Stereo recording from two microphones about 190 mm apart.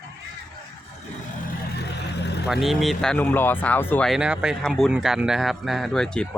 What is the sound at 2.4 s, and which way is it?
A man's voice, centre (ahead or behind).